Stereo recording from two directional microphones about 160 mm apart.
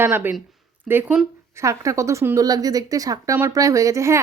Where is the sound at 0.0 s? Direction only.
10° right (ahead or behind).